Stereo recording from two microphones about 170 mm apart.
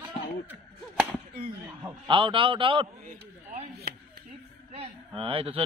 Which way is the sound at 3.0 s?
40° right (ahead or behind).